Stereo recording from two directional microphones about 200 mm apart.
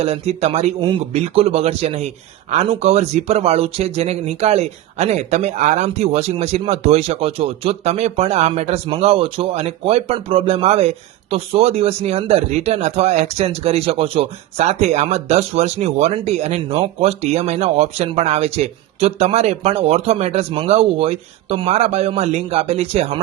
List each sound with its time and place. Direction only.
0.0 s speech: 30° right (ahead or behind)